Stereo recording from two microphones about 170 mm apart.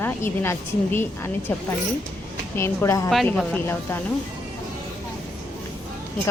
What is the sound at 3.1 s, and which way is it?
Speech, centre (ahead or behind).